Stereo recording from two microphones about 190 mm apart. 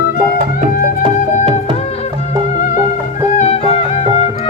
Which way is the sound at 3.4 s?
35° left (ahead or behind).